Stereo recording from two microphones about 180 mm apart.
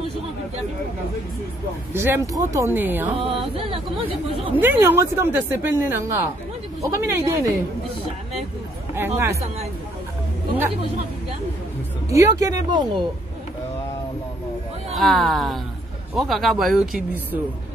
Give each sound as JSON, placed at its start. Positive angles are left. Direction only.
{"t": 2.0, "sound": "speech", "side_deg": -15}
{"t": 3.1, "sound": "music", "side_deg": -35}
{"t": 3.5, "sound": "speech", "side_deg": -30}
{"t": 4.6, "sound": "speech", "side_deg": -10}
{"t": 8.9, "sound": "speech", "side_deg": -15}
{"t": 12.1, "sound": "speech", "side_deg": -15}
{"t": 15.0, "sound": "speech", "side_deg": 0}